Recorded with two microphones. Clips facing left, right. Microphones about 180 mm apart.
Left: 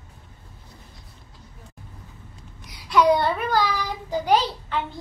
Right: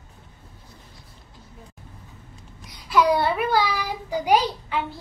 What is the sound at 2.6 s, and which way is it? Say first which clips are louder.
A child's voice: left 2 dB; 5° right (ahead or behind).